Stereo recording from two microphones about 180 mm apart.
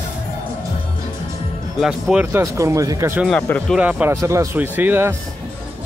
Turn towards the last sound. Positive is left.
turn(degrees=-10)  # may be behind; listen again after turning